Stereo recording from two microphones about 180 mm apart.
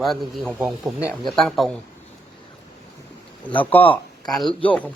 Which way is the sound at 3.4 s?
10° left (ahead or behind).